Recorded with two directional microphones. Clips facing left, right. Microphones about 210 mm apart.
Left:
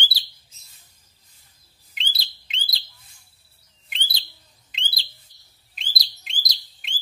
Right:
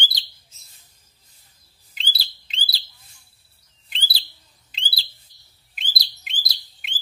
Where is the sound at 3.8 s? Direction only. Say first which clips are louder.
Right 1 dB; 35° right (ahead or behind).